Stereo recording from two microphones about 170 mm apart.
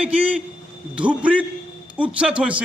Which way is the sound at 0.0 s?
10° right (ahead or behind).